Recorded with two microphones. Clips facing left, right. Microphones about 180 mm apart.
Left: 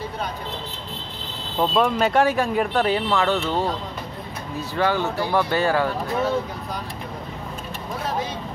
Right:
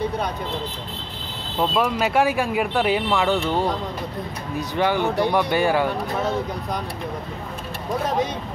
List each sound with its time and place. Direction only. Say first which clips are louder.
1.6 s speech: left 1 dB; 5° right (ahead or behind)